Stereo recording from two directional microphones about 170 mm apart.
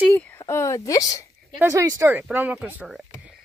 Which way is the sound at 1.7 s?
20° right (ahead or behind).